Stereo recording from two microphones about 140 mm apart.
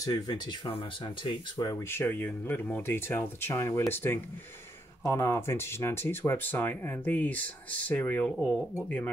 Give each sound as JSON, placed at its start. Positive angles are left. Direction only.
{"t": 0.0, "sound": "speech", "side_deg": 30}
{"t": 1.7, "sound": "speech", "side_deg": 15}